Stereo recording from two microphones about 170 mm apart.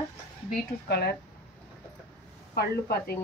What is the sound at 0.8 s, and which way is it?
Speech, 75° left (ahead or behind).